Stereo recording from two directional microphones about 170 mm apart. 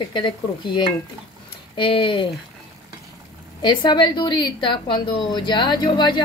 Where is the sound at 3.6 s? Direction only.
25° left (ahead or behind).